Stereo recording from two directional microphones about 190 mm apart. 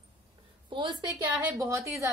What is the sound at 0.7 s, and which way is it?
A woman's voice, 25° right (ahead or behind).